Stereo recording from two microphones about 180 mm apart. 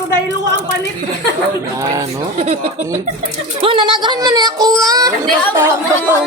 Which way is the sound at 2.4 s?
40° right (ahead or behind).